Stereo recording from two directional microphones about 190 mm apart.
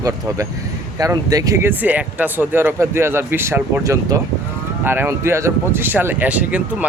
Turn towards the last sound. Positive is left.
turn(degrees=-5)  # may be behind; listen again after turning